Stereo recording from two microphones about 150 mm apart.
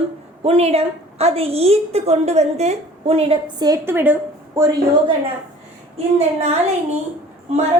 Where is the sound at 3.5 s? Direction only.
25° right (ahead or behind).